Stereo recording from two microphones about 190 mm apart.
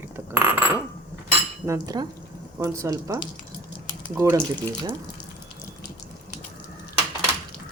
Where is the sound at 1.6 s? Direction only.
15° right (ahead or behind).